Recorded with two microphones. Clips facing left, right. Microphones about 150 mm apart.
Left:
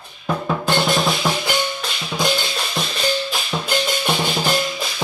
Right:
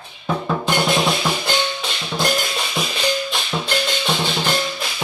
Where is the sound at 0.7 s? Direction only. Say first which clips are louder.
Even; centre (ahead or behind).